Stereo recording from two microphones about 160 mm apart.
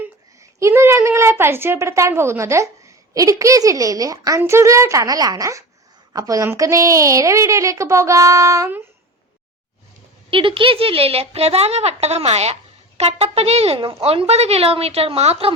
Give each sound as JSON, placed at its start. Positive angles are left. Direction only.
{"t": 0.6, "sound": "a woman's voice", "side_deg": -15}
{"t": 10.2, "sound": "speech", "side_deg": -30}